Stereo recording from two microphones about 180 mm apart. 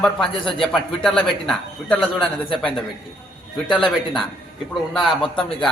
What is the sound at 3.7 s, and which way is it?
Speech, 30° left (ahead or behind).